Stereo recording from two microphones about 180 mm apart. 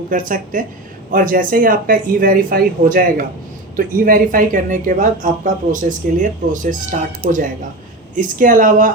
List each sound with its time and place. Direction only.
0.1 s speech: 50° right (ahead or behind)